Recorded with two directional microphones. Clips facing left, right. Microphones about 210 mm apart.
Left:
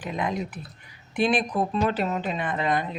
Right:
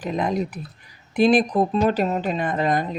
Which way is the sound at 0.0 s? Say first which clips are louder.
Right 5 dB; 40° right (ahead or behind).